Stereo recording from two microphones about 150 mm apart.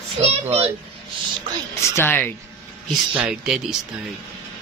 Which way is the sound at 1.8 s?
15° left (ahead or behind).